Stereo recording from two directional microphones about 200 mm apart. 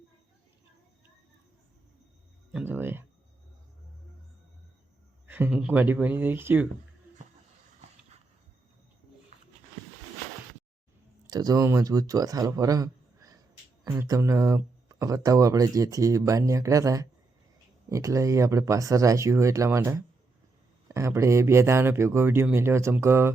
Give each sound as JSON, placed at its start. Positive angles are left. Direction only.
{"t": 2.5, "sound": "speech", "side_deg": -5}
{"t": 5.2, "sound": "speech", "side_deg": -10}
{"t": 11.3, "sound": "speech", "side_deg": -20}